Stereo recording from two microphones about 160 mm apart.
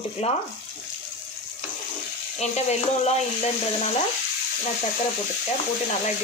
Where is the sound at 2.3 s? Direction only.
45° left (ahead or behind).